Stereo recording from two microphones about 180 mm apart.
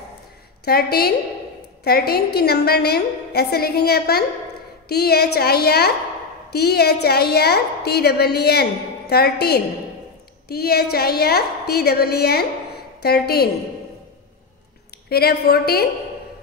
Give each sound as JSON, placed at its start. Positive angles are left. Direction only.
{"t": 0.7, "sound": "a woman's voice", "side_deg": 60}
{"t": 15.0, "sound": "a woman's voice", "side_deg": 60}